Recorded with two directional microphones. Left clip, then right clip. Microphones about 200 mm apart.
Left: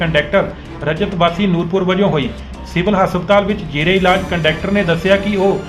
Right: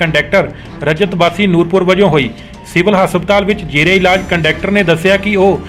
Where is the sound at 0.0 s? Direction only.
30° right (ahead or behind).